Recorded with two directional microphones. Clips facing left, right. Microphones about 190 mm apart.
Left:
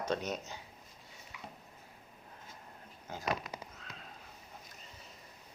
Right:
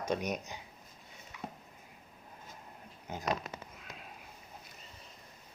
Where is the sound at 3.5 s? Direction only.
10° left (ahead or behind).